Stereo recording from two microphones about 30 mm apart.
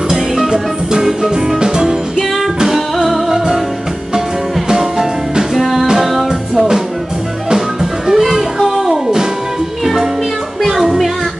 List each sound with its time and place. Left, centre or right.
0.1 s music: centre
2.7 s music: centre
4.6 s music: centre
5.6 s music: centre
9.0 s music: centre
10.7 s music: centre